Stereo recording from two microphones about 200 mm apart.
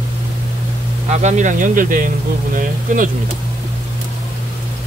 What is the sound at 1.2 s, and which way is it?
Speech, 35° right (ahead or behind).